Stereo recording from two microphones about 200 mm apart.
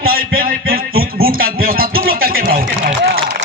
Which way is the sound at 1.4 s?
45° right (ahead or behind).